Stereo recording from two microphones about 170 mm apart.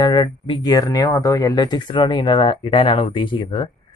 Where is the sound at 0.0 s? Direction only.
25° left (ahead or behind).